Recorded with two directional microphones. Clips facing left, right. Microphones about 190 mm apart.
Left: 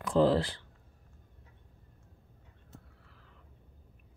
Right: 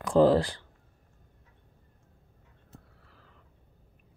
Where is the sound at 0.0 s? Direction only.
45° right (ahead or behind).